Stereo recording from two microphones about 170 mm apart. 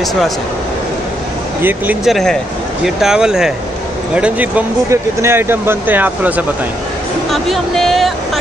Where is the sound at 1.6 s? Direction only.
10° right (ahead or behind).